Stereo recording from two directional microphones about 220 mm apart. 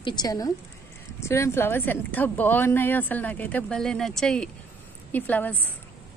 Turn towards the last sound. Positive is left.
turn(degrees=10)  # may be behind; listen again after turning